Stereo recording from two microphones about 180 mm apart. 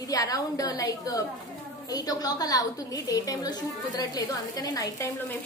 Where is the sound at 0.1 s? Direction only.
20° left (ahead or behind).